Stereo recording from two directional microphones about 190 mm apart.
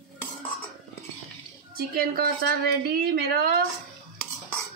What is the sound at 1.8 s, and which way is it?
A woman's voice, 50° right (ahead or behind).